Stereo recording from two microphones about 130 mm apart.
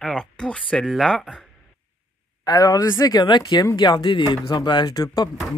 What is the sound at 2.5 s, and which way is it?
Speech, 30° left (ahead or behind).